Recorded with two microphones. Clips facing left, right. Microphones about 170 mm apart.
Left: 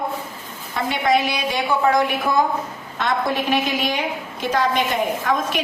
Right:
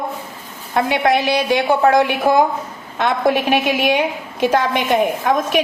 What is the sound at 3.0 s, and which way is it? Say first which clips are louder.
A woman's voice: right 5 dB; 60° right (ahead or behind).